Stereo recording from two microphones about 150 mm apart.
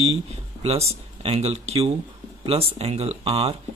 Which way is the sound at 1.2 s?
45° right (ahead or behind).